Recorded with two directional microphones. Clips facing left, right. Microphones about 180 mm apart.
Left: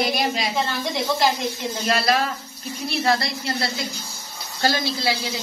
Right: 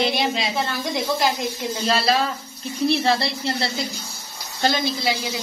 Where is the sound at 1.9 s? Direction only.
30° right (ahead or behind).